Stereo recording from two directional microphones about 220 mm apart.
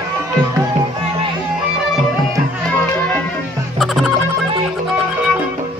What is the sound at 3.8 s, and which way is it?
Music, centre (ahead or behind).